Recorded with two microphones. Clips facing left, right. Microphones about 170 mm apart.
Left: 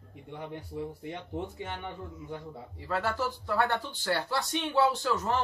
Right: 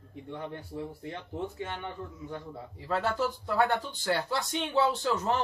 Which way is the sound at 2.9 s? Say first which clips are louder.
Right 2 dB; 20° right (ahead or behind).